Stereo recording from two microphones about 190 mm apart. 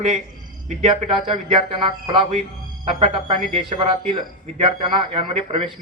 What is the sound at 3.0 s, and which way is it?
Speech, 35° right (ahead or behind).